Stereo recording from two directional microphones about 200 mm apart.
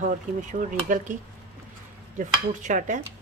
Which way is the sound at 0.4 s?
40° right (ahead or behind).